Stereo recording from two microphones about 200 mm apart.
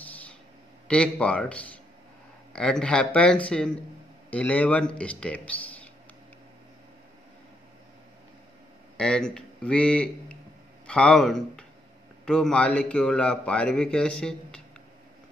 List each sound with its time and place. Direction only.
0.0 s a sound: 5° left (ahead or behind)
0.8 s a man's voice: 5° left (ahead or behind)
8.9 s a man's voice: 5° left (ahead or behind)